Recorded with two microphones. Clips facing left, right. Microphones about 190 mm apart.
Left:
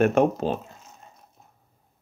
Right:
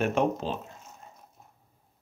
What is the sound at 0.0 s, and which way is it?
Speech, 55° left (ahead or behind).